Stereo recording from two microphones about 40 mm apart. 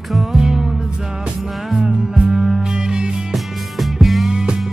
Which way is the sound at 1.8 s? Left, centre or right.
Centre.